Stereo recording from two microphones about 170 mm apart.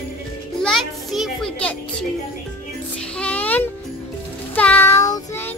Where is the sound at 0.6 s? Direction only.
Centre (ahead or behind).